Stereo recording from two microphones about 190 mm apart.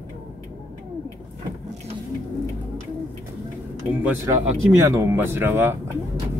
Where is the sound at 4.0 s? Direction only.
10° right (ahead or behind).